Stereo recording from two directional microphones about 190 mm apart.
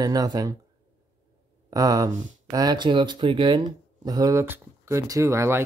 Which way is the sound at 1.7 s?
20° right (ahead or behind).